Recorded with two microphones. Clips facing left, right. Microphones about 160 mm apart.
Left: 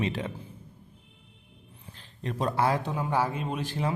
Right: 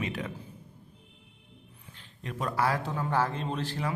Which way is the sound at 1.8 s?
35° left (ahead or behind).